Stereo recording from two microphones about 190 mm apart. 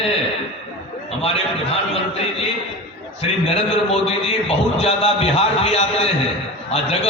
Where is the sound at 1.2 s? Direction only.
30° left (ahead or behind).